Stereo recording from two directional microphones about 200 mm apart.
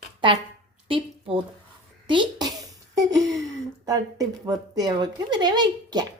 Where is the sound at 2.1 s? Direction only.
20° right (ahead or behind).